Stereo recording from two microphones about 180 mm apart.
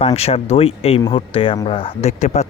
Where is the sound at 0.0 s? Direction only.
35° left (ahead or behind).